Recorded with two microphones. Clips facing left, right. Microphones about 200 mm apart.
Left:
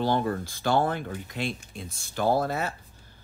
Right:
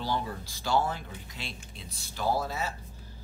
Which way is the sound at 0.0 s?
55° left (ahead or behind).